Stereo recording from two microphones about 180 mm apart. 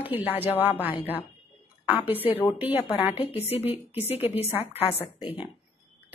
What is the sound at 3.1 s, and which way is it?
Speech, 30° left (ahead or behind).